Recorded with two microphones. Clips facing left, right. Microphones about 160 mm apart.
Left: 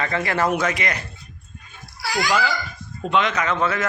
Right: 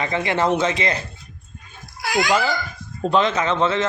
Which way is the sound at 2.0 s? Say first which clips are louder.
Right 3 dB; 50° right (ahead or behind).